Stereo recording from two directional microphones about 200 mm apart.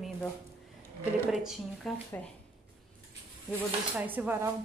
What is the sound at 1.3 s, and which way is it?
Speech, centre (ahead or behind).